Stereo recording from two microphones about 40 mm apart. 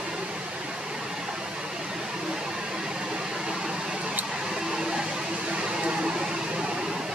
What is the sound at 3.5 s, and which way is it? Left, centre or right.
Vehicle, centre.